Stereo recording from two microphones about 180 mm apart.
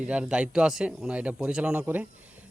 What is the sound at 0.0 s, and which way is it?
Speech, 5° right (ahead or behind).